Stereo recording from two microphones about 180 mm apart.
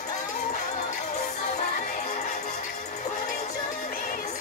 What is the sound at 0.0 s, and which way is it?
Music, 40° left (ahead or behind).